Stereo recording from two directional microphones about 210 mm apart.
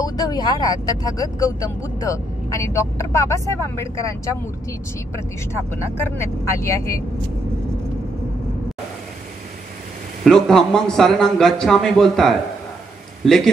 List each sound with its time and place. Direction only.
0.0 s speech: 20° left (ahead or behind)
10.2 s speech: centre (ahead or behind)